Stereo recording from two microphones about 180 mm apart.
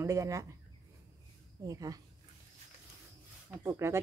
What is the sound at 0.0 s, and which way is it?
Speech, 15° right (ahead or behind).